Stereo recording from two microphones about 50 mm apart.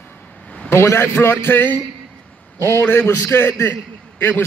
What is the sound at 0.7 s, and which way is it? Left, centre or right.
Speech, left.